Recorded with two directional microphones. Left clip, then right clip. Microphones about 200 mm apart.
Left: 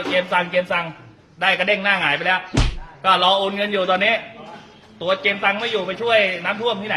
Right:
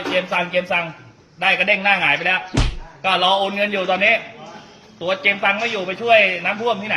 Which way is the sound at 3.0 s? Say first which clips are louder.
Left 1 dB; 10° left (ahead or behind).